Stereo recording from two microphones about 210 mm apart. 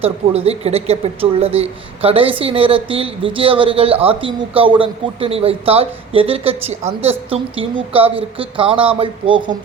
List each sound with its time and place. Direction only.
0.0 s a man's voice: 30° right (ahead or behind)